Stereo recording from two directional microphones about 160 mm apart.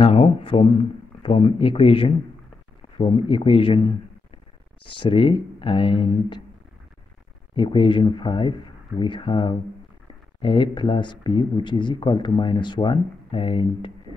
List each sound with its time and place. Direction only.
0.0 s speech: 35° left (ahead or behind)
4.9 s speech: 30° left (ahead or behind)
7.5 s speech: 30° left (ahead or behind)